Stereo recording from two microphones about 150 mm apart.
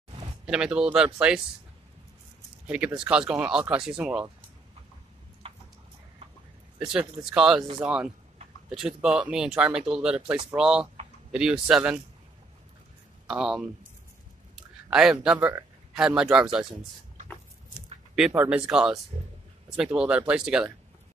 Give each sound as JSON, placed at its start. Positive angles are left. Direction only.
{"t": 0.5, "sound": "speech", "side_deg": -5}
{"t": 2.6, "sound": "speech", "side_deg": -5}
{"t": 5.4, "sound": "a sound", "side_deg": -40}
{"t": 6.8, "sound": "speech", "side_deg": -5}
{"t": 13.3, "sound": "speech", "side_deg": -5}
{"t": 14.5, "sound": "a sound", "side_deg": -5}
{"t": 15.9, "sound": "speech", "side_deg": -5}
{"t": 18.1, "sound": "speech", "side_deg": -5}